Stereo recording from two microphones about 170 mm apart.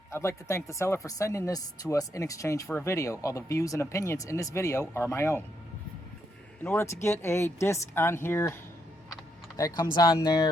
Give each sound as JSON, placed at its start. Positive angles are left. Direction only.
{"t": 0.1, "sound": "speech", "side_deg": 15}
{"t": 6.7, "sound": "speech", "side_deg": 15}
{"t": 9.6, "sound": "speech", "side_deg": 20}